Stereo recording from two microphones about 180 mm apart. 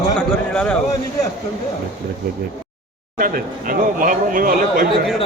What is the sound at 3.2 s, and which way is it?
Speech, 50° right (ahead or behind).